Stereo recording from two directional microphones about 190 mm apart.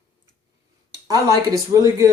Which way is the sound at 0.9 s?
20° right (ahead or behind).